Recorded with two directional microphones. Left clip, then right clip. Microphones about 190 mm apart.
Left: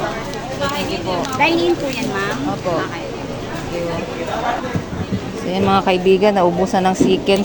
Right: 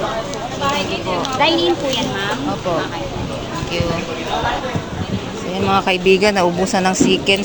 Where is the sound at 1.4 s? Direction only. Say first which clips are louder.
Even; 45° left (ahead or behind).